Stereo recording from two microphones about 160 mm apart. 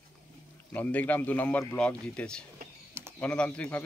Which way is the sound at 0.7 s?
10° left (ahead or behind).